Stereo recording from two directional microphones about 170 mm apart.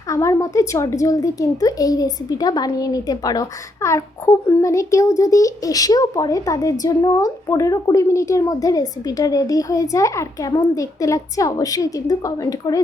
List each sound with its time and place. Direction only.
0.1 s a child's voice: 20° left (ahead or behind)